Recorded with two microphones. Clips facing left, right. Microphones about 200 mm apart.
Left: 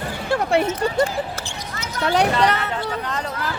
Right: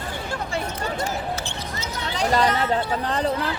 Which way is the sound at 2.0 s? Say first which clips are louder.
Left 9 dB; 65° left (ahead or behind).